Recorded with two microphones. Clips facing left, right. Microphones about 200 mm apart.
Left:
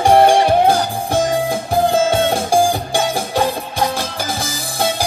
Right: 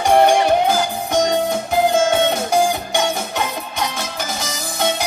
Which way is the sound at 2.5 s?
30° left (ahead or behind).